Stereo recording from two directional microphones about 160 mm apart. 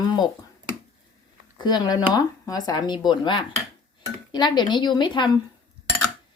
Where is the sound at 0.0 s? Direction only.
25° left (ahead or behind).